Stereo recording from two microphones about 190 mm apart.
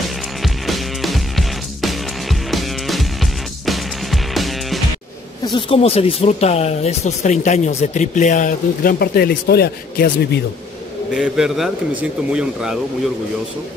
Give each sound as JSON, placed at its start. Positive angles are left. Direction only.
{"t": 0.4, "sound": "music", "side_deg": 0}
{"t": 5.7, "sound": "speech", "side_deg": 30}
{"t": 11.1, "sound": "speech", "side_deg": -5}